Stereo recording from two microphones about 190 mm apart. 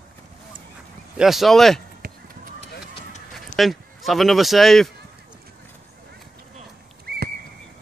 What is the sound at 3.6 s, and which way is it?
Speech, centre (ahead or behind).